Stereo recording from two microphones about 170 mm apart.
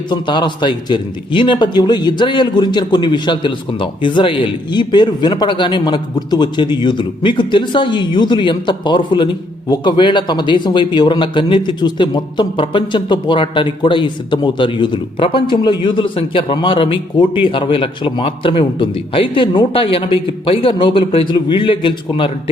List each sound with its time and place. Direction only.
0.1 s a man's voice: 25° left (ahead or behind)